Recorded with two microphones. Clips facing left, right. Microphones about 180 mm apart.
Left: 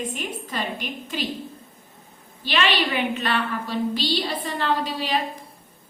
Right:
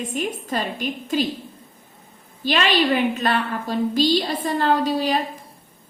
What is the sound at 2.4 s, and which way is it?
A woman's voice, 45° right (ahead or behind).